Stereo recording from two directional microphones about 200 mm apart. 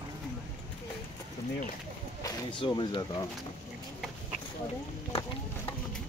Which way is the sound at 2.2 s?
25° left (ahead or behind).